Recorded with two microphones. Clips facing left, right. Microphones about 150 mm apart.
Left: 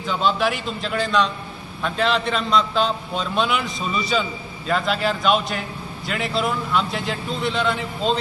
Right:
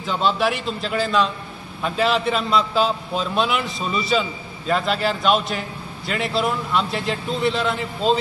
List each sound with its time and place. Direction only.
0.0 s a man's voice: centre (ahead or behind)